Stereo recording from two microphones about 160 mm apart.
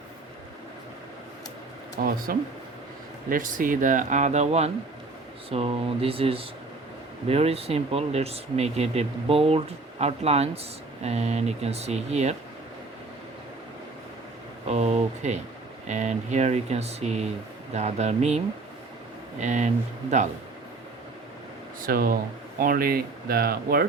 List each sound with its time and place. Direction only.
2.0 s speech: 60° right (ahead or behind)
3.2 s speech: 55° right (ahead or behind)
14.7 s speech: 45° right (ahead or behind)
21.8 s speech: 65° right (ahead or behind)